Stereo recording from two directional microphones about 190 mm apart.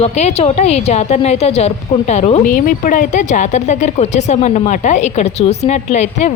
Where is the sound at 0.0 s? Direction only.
35° left (ahead or behind).